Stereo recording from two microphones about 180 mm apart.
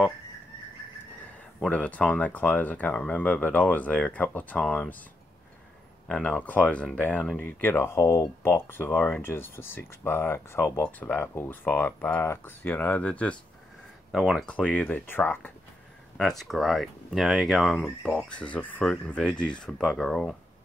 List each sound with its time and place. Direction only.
1.6 s speech: 10° left (ahead or behind)
6.0 s speech: 5° left (ahead or behind)
14.1 s speech: 5° right (ahead or behind)
14.5 s speech: 10° left (ahead or behind)